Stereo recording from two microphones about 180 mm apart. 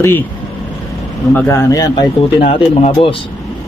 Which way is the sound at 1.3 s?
15° left (ahead or behind).